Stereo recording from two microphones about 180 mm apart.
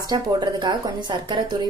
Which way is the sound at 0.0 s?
20° right (ahead or behind).